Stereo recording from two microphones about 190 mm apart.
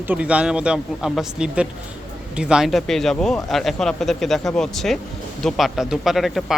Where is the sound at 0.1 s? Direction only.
5° right (ahead or behind).